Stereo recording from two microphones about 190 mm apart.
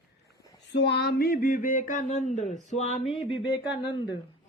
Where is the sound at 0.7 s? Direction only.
65° left (ahead or behind); by 3.0 s 35° left (ahead or behind).